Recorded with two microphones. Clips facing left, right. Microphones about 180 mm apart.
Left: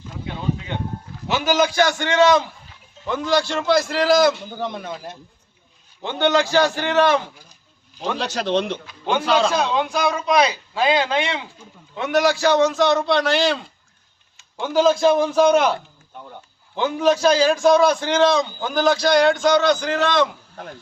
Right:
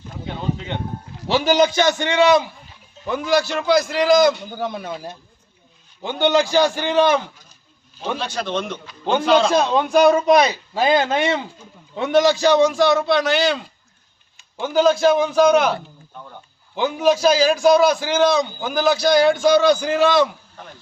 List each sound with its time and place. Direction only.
1.3 s a man's voice: 25° right (ahead or behind); by 4.9 s 5° right (ahead or behind)
6.0 s a man's voice: 15° right (ahead or behind)
8.3 s a man's voice: 35° left (ahead or behind)
9.2 s a man's voice: 5° left (ahead or behind)
9.5 s speech: 45° right (ahead or behind)
11.9 s a man's voice: 30° right (ahead or behind)
12.4 s a man's voice: 15° right (ahead or behind)
14.8 s a man's voice: centre (ahead or behind)
16.7 s a man's voice: 5° right (ahead or behind)